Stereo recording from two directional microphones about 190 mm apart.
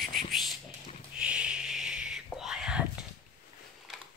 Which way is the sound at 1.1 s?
5° right (ahead or behind).